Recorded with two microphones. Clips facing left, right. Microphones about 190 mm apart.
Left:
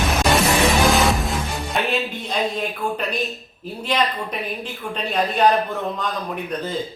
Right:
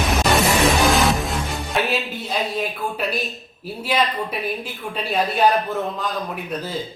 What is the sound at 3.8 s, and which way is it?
A man's voice, 5° right (ahead or behind).